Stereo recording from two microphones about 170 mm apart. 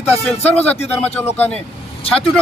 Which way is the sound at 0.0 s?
10° left (ahead or behind).